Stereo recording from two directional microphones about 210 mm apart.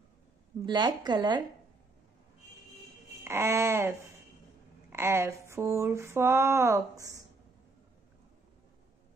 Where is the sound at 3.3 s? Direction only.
15° right (ahead or behind).